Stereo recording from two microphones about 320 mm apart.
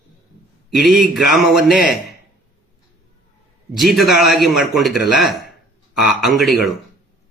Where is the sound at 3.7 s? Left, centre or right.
Centre.